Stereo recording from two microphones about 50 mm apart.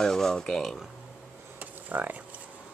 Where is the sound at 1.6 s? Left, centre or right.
Right.